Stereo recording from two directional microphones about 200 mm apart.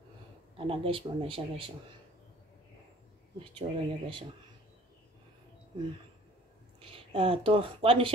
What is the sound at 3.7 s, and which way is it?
Speech, 35° right (ahead or behind).